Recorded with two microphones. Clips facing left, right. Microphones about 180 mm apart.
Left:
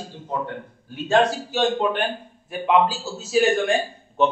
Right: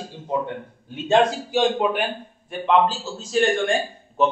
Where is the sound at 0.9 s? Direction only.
20° right (ahead or behind).